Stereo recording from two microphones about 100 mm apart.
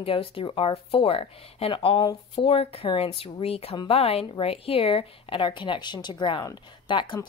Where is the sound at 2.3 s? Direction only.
75° left (ahead or behind).